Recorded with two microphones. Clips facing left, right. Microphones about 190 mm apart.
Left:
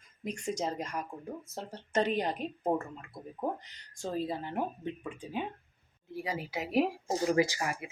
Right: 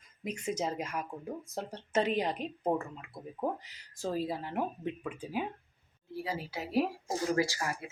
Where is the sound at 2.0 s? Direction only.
Centre (ahead or behind).